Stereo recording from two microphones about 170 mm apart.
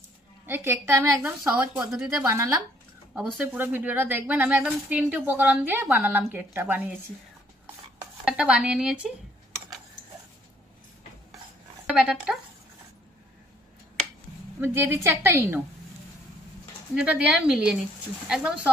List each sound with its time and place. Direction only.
0.5 s a woman's voice: 15° right (ahead or behind)
1.8 s a woman's voice: 5° right (ahead or behind)
7.6 s a sound: 10° right (ahead or behind)
11.8 s speech: 5° right (ahead or behind)
14.6 s a woman's voice: 15° right (ahead or behind)
16.9 s a woman's voice: 5° right (ahead or behind)